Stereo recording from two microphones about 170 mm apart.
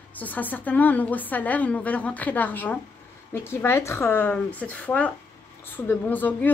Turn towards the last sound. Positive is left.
turn(degrees=10)  # may be behind; listen again after turning